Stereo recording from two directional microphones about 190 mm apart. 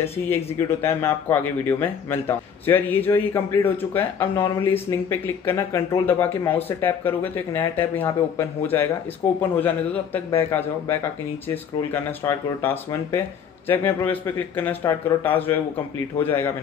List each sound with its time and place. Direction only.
0.0 s speech: 10° left (ahead or behind)
10.1 s speech: 10° left (ahead or behind)